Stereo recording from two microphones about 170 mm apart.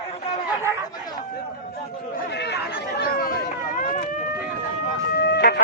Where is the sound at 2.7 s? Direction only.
65° left (ahead or behind).